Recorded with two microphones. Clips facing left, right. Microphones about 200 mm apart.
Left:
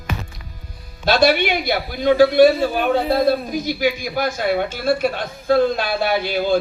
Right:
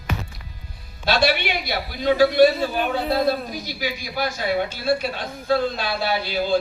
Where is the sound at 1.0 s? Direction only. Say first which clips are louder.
Left 5 dB; 45° left (ahead or behind).